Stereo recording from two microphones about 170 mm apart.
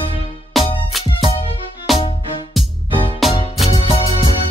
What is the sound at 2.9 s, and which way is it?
Music, 30° right (ahead or behind).